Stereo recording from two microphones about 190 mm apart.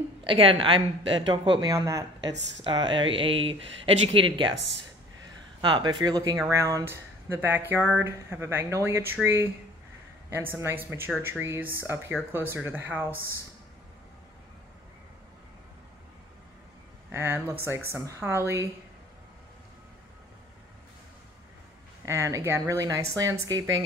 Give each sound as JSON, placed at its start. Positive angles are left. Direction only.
{"t": 0.3, "sound": "speech", "side_deg": -30}
{"t": 5.6, "sound": "speech", "side_deg": -25}
{"t": 17.1, "sound": "speech", "side_deg": -15}
{"t": 22.0, "sound": "speech", "side_deg": -15}